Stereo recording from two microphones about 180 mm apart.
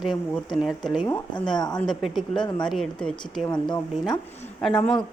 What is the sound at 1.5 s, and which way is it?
Speech, 20° left (ahead or behind).